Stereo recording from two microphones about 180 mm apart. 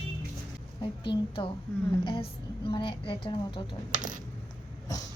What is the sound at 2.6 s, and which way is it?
Speech, 25° left (ahead or behind).